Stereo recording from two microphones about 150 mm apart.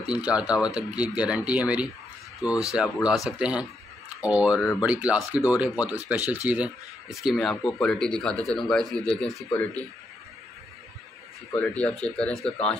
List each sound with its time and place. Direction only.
0.0 s speech: 5° right (ahead or behind); by 9.8 s 10° left (ahead or behind)
11.5 s speech: 10° left (ahead or behind)